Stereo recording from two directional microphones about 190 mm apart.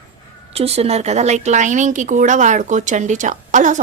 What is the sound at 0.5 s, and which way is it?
A woman's voice, 35° right (ahead or behind).